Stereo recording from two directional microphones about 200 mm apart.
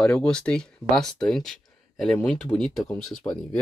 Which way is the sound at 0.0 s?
5° left (ahead or behind).